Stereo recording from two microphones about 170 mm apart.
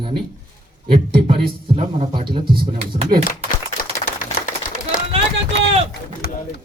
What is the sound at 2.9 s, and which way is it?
Speech, 40° right (ahead or behind).